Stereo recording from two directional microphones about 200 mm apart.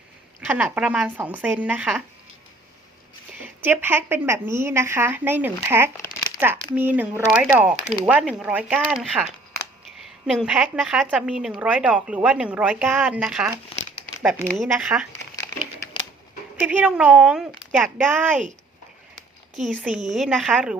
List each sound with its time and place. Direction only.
0.4 s a woman's voice: 10° right (ahead or behind)
3.3 s a woman's voice: 10° right (ahead or behind)
16.6 s a woman's voice: 5° right (ahead or behind)
19.5 s a woman's voice: centre (ahead or behind)
19.9 s a woman's voice: 40° right (ahead or behind)
20.1 s a woman's voice: centre (ahead or behind)